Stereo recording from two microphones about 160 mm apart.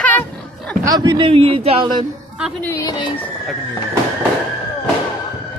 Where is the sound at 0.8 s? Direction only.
25° right (ahead or behind).